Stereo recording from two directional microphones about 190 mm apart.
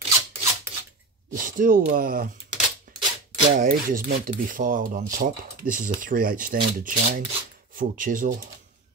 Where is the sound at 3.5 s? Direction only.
45° right (ahead or behind).